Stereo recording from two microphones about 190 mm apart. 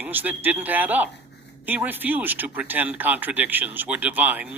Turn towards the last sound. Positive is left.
turn(degrees=-10)  # may be behind; listen again after turning